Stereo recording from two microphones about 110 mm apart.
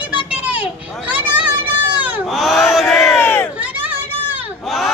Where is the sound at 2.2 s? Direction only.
Centre (ahead or behind).